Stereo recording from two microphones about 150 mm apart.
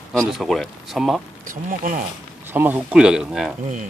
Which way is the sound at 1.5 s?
65° right (ahead or behind).